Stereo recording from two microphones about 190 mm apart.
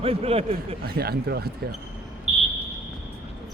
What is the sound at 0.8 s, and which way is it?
Speech, 55° right (ahead or behind).